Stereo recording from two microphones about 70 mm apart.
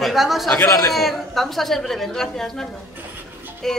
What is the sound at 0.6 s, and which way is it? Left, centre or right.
Speech, left.